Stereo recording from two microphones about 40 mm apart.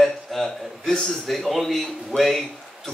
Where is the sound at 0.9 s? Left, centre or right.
Centre.